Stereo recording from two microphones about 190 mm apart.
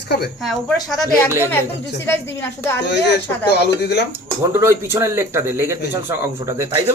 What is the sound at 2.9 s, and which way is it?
Speech, 65° left (ahead or behind).